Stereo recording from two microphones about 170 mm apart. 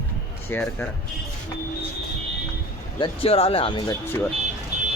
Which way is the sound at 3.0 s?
35° left (ahead or behind).